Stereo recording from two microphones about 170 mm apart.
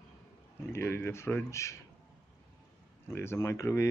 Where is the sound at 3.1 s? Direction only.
15° left (ahead or behind).